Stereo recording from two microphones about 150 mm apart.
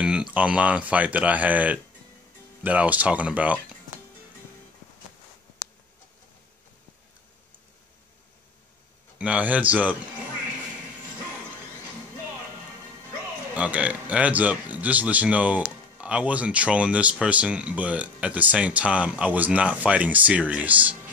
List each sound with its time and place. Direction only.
0.0 s speech: 5° right (ahead or behind)
9.2 s speech: 10° right (ahead or behind)
13.6 s speech: 10° right (ahead or behind)